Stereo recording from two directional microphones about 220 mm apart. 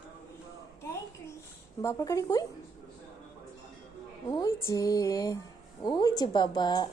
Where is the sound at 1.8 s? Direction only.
15° left (ahead or behind).